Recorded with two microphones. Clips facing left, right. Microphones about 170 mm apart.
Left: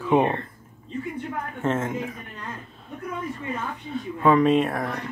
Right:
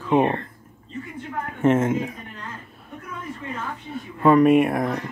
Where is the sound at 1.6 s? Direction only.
20° right (ahead or behind).